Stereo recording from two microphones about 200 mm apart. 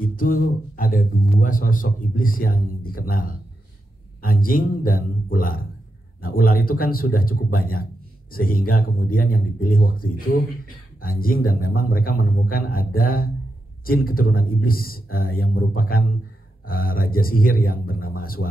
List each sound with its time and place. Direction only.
0.0 s speech: 45° left (ahead or behind)